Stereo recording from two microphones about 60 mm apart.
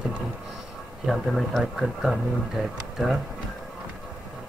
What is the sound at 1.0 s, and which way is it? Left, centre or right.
Speech, centre.